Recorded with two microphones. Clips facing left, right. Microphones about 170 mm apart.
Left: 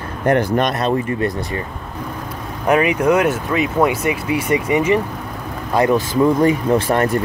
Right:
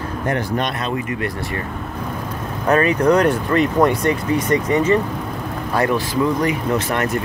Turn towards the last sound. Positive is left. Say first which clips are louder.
# left 4 dB
turn(degrees=35)  # may be behind; listen again after turning